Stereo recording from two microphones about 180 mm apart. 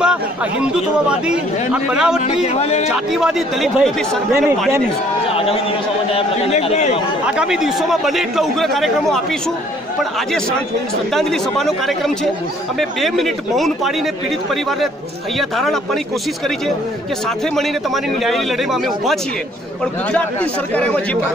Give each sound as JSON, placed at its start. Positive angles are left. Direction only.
{"t": 0.0, "sound": "speech", "side_deg": -5}
{"t": 2.2, "sound": "a man's voice", "side_deg": 35}
{"t": 2.9, "sound": "speech", "side_deg": -5}
{"t": 5.3, "sound": "a sound", "side_deg": 30}
{"t": 6.1, "sound": "a man's voice", "side_deg": 35}
{"t": 7.2, "sound": "speech", "side_deg": -5}
{"t": 11.1, "sound": "speech", "side_deg": 0}
{"t": 15.3, "sound": "speech", "side_deg": 0}
{"t": 17.6, "sound": "speech", "side_deg": 0}
{"t": 20.7, "sound": "speech", "side_deg": 10}